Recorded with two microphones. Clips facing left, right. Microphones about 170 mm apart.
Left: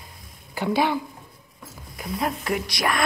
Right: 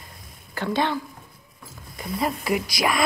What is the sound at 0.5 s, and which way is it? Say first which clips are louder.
Speech: left 2 dB; 10° left (ahead or behind).